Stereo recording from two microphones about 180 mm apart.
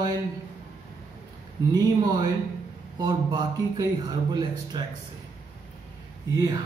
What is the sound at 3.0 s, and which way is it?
Speech, 25° right (ahead or behind).